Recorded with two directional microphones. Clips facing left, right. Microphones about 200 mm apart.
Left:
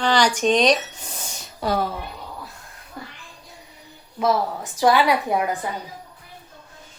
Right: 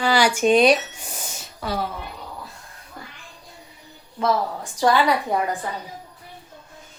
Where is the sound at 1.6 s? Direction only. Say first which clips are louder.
Left 5 dB; 30° left (ahead or behind).